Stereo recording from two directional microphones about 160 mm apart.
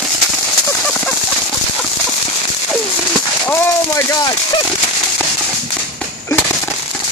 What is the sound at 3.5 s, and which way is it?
Speech, 20° left (ahead or behind).